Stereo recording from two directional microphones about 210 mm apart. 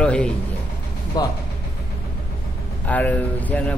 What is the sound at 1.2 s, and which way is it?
Speech, 20° left (ahead or behind).